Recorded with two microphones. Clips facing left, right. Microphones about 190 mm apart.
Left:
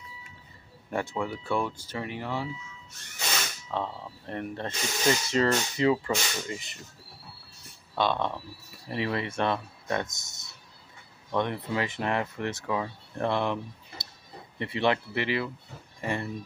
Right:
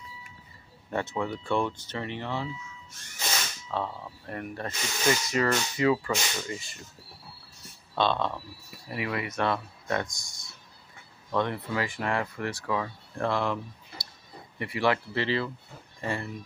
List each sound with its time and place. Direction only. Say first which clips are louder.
0.8 s speech: even; 15° left (ahead or behind)
3.7 s speech: even; 20° left (ahead or behind)
7.9 s speech: right 1 dB; 15° left (ahead or behind)
8.9 s speech: left 2 dB; 30° left (ahead or behind)